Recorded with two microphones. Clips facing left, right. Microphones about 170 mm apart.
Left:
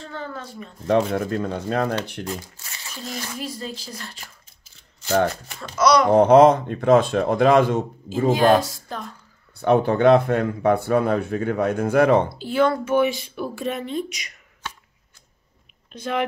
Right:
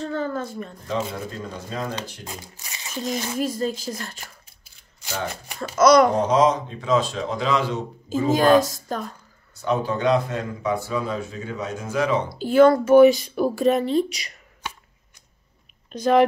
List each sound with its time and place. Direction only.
0.0 s a woman's voice: 40° right (ahead or behind)
0.8 s speech: 60° left (ahead or behind)
2.2 s speech: 15° right (ahead or behind)
3.3 s a woman's voice: 45° right (ahead or behind)
5.8 s a woman's voice: 50° right (ahead or behind)
6.1 s speech: 60° left (ahead or behind)
8.3 s a woman's voice: 45° right (ahead or behind)
9.6 s speech: 60° left (ahead or behind)
12.4 s speech: 45° right (ahead or behind)
14.6 s a sound: 10° right (ahead or behind)
15.9 s speech: 40° right (ahead or behind)